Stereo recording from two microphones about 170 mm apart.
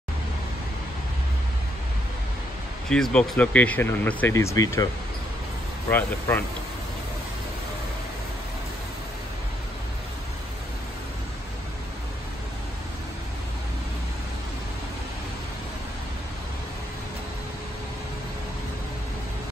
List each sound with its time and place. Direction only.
2.9 s speech: 5° left (ahead or behind)
5.9 s speech: 10° left (ahead or behind)